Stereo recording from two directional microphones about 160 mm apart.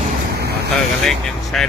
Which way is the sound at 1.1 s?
Centre (ahead or behind).